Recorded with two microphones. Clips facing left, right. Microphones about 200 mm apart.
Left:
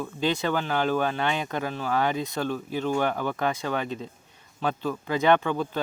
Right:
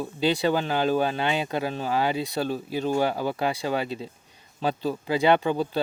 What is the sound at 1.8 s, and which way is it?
Speech, 30° right (ahead or behind).